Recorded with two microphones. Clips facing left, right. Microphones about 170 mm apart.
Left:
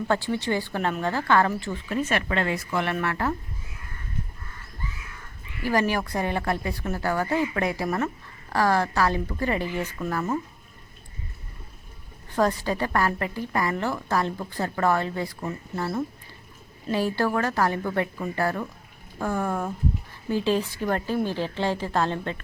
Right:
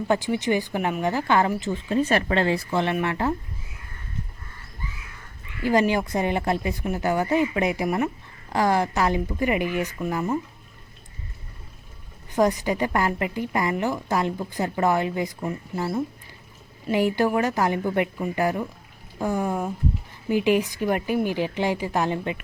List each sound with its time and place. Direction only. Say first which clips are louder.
0.1 s a woman's voice: right 3 dB; 15° right (ahead or behind)
2.0 s speech: right 4 dB; 35° right (ahead or behind); by 3.3 s 20° right (ahead or behind)
5.6 s a woman's voice: right 3 dB; 20° right (ahead or behind)
12.3 s a woman's voice: right 2 dB; 15° right (ahead or behind)